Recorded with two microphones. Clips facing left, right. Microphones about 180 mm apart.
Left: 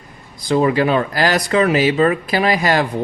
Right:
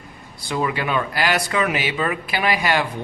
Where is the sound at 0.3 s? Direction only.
40° left (ahead or behind).